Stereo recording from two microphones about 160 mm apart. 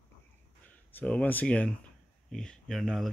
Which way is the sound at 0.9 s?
10° left (ahead or behind).